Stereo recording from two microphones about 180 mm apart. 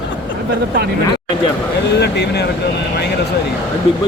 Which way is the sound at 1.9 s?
70° left (ahead or behind).